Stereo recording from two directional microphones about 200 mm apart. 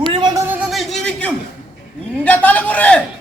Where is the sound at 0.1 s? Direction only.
20° right (ahead or behind).